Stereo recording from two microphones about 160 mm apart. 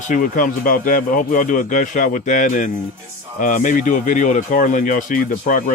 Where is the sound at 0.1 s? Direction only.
55° left (ahead or behind).